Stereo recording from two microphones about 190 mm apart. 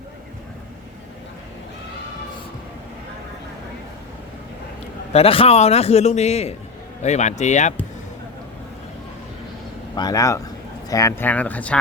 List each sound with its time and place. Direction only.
5.1 s a man's voice: 30° left (ahead or behind)
9.9 s speech: 20° left (ahead or behind)